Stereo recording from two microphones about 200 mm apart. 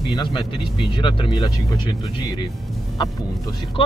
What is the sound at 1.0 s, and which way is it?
Speech, 25° left (ahead or behind).